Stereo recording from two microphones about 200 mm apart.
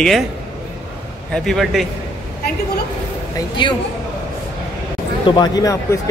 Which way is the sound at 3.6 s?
25° left (ahead or behind).